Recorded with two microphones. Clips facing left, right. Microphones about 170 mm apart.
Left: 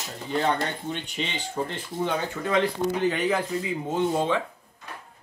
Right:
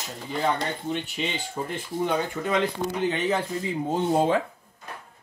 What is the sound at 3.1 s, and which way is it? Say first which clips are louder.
Speech: even; 25° right (ahead or behind).